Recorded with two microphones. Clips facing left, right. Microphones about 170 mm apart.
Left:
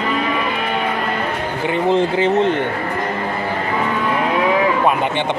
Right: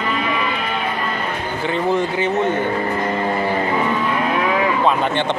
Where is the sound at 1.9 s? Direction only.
30° left (ahead or behind).